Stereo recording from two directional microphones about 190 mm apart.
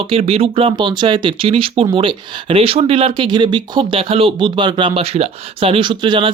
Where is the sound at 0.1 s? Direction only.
30° right (ahead or behind).